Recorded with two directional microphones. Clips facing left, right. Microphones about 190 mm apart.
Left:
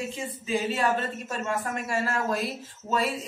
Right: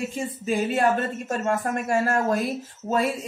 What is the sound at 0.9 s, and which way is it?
Speech, 50° right (ahead or behind).